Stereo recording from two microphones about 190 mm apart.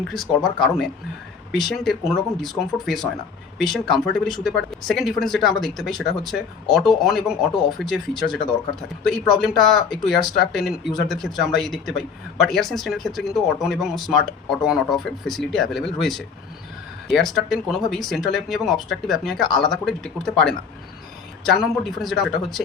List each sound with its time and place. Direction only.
0.1 s speech: centre (ahead or behind)